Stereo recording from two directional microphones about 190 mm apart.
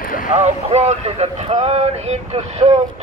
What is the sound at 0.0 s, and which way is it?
Vehicle, 45° left (ahead or behind).